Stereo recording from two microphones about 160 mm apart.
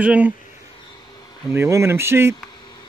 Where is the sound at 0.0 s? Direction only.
10° right (ahead or behind).